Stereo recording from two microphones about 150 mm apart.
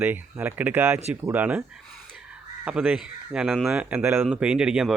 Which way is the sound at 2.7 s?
10° right (ahead or behind).